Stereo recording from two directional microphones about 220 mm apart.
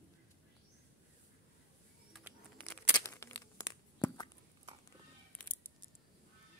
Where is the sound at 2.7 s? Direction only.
10° left (ahead or behind).